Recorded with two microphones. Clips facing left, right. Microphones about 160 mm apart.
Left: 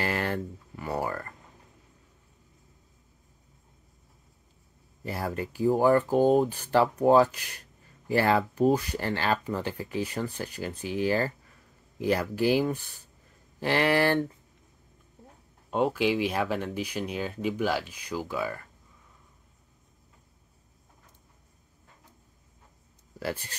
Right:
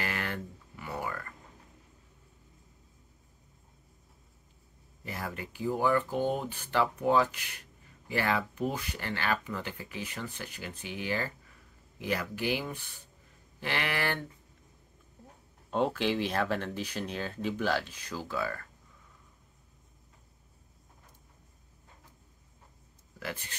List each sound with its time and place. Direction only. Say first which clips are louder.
0.0 s a sound: left 6 dB; 35° left (ahead or behind)
5.0 s speech: left 7 dB; 35° left (ahead or behind)
15.7 s speech: left 3 dB; 10° left (ahead or behind)
23.1 s speech: left 6 dB; 35° left (ahead or behind)